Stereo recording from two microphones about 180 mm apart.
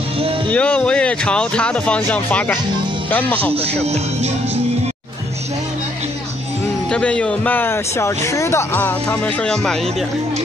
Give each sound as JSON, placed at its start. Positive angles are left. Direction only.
{"t": 0.5, "sound": "speech", "side_deg": 5}
{"t": 3.8, "sound": "music", "side_deg": -35}
{"t": 6.9, "sound": "speech", "side_deg": 5}